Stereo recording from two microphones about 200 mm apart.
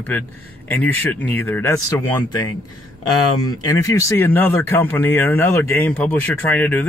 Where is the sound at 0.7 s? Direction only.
10° left (ahead or behind).